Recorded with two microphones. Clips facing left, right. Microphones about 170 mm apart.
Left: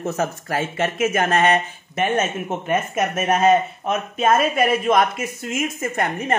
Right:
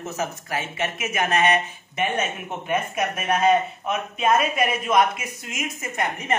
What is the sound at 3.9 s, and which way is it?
A man's voice, 40° left (ahead or behind).